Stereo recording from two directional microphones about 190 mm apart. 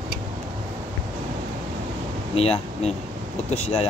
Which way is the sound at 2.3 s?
30° left (ahead or behind).